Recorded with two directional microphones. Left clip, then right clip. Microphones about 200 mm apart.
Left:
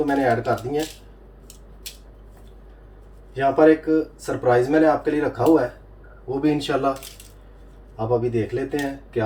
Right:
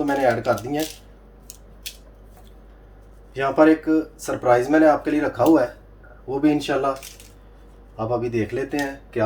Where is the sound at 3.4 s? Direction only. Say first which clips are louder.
Left 1 dB; 60° right (ahead or behind).